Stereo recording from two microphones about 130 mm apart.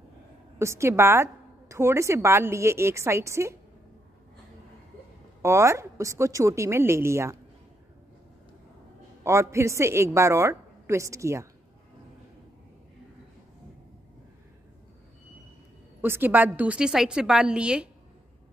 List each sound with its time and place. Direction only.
0.6 s a woman's voice: 20° right (ahead or behind)
5.4 s a woman's voice: 20° right (ahead or behind)
9.2 s a woman's voice: 20° right (ahead or behind)
16.0 s a woman's voice: 15° right (ahead or behind)